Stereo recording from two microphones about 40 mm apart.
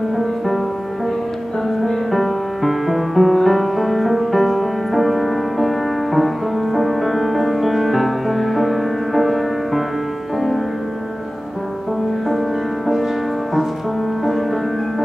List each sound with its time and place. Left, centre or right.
1.8 s music: centre
12.3 s music: centre
14.2 s music: centre